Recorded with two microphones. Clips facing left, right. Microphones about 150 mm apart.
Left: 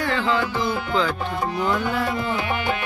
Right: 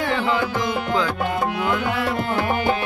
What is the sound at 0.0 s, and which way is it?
Music, 15° right (ahead or behind).